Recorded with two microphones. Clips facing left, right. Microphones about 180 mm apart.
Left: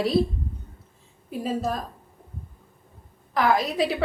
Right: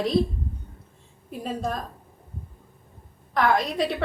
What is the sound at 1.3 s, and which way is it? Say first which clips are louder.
Speech: left 2 dB; centre (ahead or behind).